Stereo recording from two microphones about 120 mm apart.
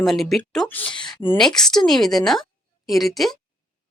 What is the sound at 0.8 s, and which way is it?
Speech, 40° left (ahead or behind).